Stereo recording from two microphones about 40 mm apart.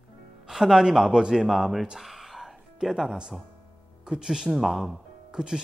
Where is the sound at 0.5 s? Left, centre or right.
Centre.